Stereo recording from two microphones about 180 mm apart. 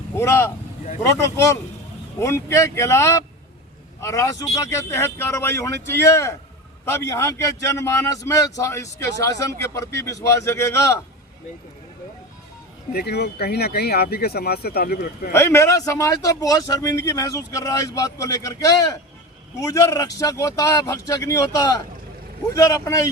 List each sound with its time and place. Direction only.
0.2 s a man's voice: 15° left (ahead or behind)
12.9 s speech: 60° left (ahead or behind)
15.3 s a man's voice: 15° left (ahead or behind)